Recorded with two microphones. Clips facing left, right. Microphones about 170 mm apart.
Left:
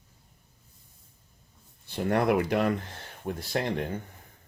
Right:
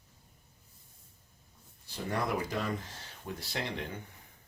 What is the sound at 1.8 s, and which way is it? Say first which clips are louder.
Speech: left 9 dB; 60° left (ahead or behind).